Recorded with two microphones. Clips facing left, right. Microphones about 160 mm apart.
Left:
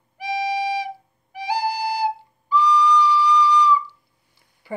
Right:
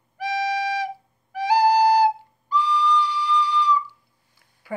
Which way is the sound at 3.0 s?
50° right (ahead or behind).